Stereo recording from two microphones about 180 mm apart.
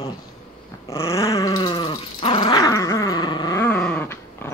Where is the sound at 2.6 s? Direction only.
20° left (ahead or behind).